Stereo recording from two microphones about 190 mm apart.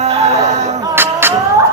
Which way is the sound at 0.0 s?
35° right (ahead or behind).